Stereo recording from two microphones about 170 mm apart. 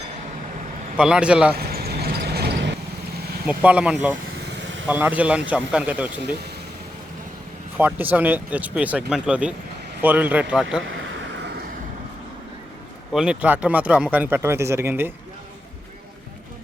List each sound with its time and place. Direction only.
0.9 s speech: 5° right (ahead or behind)
1.5 s vehicle: 65° right (ahead or behind); by 2.7 s 80° right
3.4 s speech: 5° right (ahead or behind)
4.4 s vehicle: 90° right
4.9 s speech: 10° right (ahead or behind)
7.8 s speech: 10° right (ahead or behind)
13.1 s speech: 5° right (ahead or behind)